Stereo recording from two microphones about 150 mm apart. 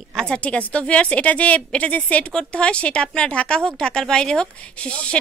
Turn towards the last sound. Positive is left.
turn(degrees=5)  # may be behind; listen again after turning